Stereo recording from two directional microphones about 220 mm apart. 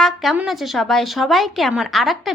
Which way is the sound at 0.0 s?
Centre (ahead or behind).